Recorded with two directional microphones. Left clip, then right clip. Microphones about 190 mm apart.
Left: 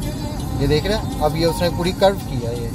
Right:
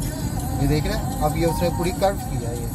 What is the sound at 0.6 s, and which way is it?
Speech, 50° left (ahead or behind).